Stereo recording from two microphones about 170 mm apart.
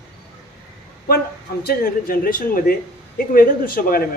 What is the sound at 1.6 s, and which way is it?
A man's voice, 60° left (ahead or behind).